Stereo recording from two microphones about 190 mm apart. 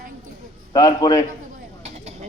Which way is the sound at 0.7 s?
20° left (ahead or behind).